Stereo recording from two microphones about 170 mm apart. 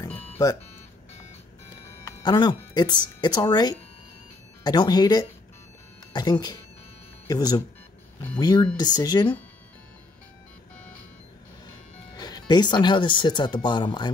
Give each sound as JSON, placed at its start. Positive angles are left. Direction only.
{"t": 0.1, "sound": "music", "side_deg": 15}
{"t": 2.0, "sound": "speech", "side_deg": 25}
{"t": 12.2, "sound": "speech", "side_deg": 25}